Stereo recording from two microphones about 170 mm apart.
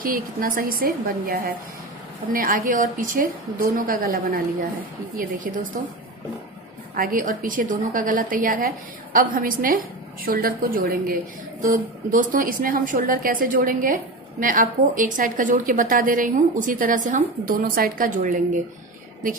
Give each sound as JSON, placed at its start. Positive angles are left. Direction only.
{"t": 0.0, "sound": "a woman's voice", "side_deg": -60}
{"t": 7.0, "sound": "a woman's voice", "side_deg": -55}